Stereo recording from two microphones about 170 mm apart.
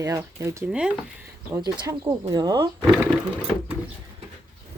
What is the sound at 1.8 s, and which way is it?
Speech, 20° right (ahead or behind).